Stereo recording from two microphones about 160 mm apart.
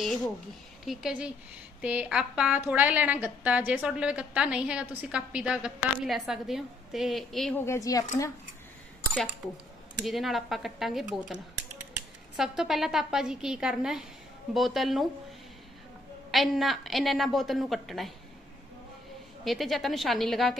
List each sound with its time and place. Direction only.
0.0 s a woman's voice: centre (ahead or behind)
7.5 s speech: 15° left (ahead or behind)
10.0 s a woman's voice: centre (ahead or behind)
12.4 s a woman's voice: centre (ahead or behind)
16.3 s a woman's voice: centre (ahead or behind)
19.4 s a woman's voice: centre (ahead or behind)